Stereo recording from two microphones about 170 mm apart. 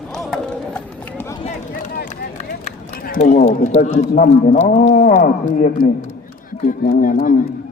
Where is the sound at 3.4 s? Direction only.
40° left (ahead or behind).